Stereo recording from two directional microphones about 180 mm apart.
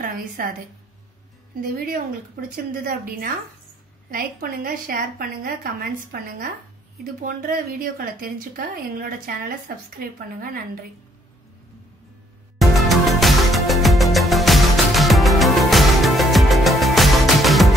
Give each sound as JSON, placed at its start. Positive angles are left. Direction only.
{"t": 0.0, "sound": "a sound", "side_deg": -50}
{"t": 2.5, "sound": "a woman's voice", "side_deg": -55}
{"t": 12.5, "sound": "music", "side_deg": 0}